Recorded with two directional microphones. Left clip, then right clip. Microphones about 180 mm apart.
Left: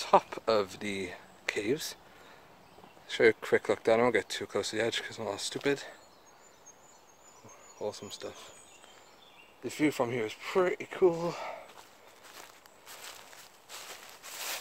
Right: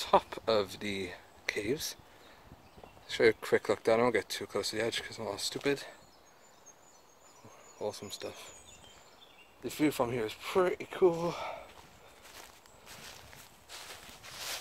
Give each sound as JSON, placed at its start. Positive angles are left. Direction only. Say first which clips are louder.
{"t": 0.0, "sound": "speech", "louder": "left 2 dB", "side_deg": 10}
{"t": 1.4, "sound": "speech", "louder": "left 2 dB", "side_deg": 20}
{"t": 3.1, "sound": "speech", "louder": "left 2 dB", "side_deg": 10}
{"t": 5.6, "sound": "speech", "louder": "left 2 dB", "side_deg": 5}
{"t": 7.8, "sound": "speech", "louder": "even", "side_deg": -10}
{"t": 9.6, "sound": "speech", "louder": "left 1 dB", "side_deg": -5}
{"t": 12.4, "sound": "walk", "louder": "left 1 dB", "side_deg": 10}